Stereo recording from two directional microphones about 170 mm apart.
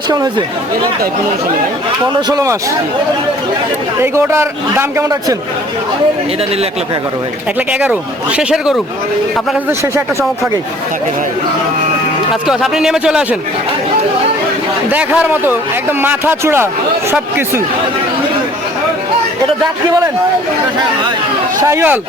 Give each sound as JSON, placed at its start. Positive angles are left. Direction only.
{"t": 0.1, "sound": "speech", "side_deg": -25}
{"t": 2.3, "sound": "speech", "side_deg": -20}
{"t": 4.0, "sound": "a man's voice", "side_deg": -15}
{"t": 7.7, "sound": "speech", "side_deg": -5}
{"t": 9.6, "sound": "a man's voice", "side_deg": -15}
{"t": 12.3, "sound": "speech", "side_deg": 0}
{"t": 14.8, "sound": "a man's voice", "side_deg": -10}
{"t": 21.6, "sound": "a man's voice", "side_deg": -15}